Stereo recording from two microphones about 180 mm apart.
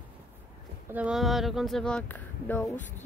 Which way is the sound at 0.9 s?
5° right (ahead or behind).